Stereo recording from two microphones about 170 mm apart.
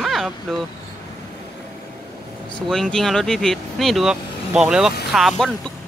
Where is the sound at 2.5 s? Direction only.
5° left (ahead or behind).